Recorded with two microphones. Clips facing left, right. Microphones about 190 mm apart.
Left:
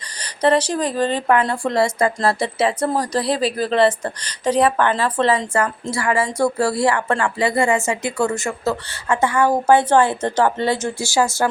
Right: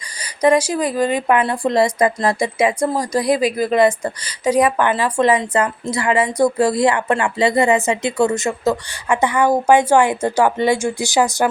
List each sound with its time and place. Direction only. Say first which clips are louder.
0.2 s speech: right 2 dB; 10° right (ahead or behind)